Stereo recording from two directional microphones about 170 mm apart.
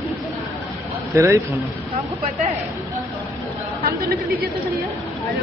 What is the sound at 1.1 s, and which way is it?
Speech, 15° right (ahead or behind).